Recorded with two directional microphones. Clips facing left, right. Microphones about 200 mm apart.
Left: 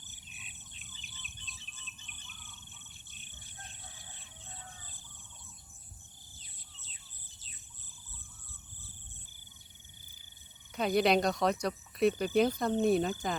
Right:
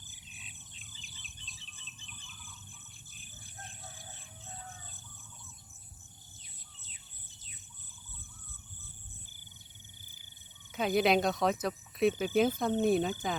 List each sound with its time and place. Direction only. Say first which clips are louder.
1.5 s a sound: even; 30° right (ahead or behind)
3.3 s cricket: right 3 dB; 40° right (ahead or behind)
10.7 s speech: even; centre (ahead or behind)